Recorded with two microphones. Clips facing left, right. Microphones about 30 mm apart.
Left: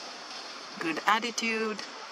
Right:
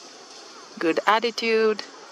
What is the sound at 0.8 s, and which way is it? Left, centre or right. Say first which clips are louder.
Speech: right 9 dB; left.